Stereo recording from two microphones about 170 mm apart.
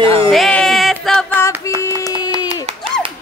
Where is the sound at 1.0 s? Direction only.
5° left (ahead or behind).